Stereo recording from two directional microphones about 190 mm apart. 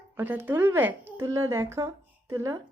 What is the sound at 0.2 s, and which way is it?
Speech, 10° right (ahead or behind).